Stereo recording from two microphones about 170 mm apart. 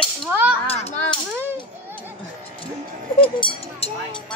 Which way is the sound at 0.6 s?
35° left (ahead or behind).